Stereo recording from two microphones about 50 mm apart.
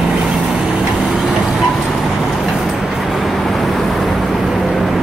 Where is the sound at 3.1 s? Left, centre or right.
Centre.